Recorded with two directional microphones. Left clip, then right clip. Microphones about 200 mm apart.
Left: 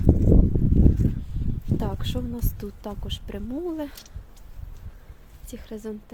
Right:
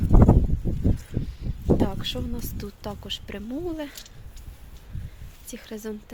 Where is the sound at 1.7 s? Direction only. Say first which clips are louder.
Right 6 dB; 30° left (ahead or behind).